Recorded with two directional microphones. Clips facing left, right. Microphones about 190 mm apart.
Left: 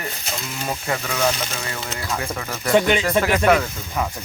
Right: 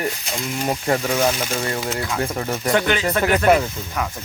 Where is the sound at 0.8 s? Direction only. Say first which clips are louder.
Right 6 dB; 40° right (ahead or behind).